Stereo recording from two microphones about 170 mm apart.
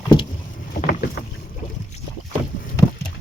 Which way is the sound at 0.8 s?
65° left (ahead or behind).